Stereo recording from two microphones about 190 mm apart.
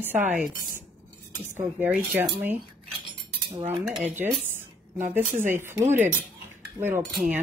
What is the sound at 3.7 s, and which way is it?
Speech, 5° right (ahead or behind).